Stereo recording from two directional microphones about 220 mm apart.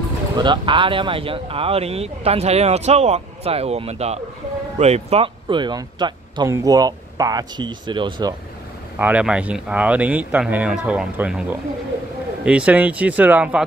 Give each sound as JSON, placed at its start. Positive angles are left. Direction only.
{"t": 0.4, "sound": "speech", "side_deg": -20}
{"t": 8.9, "sound": "speech", "side_deg": -5}
{"t": 12.4, "sound": "speech", "side_deg": -5}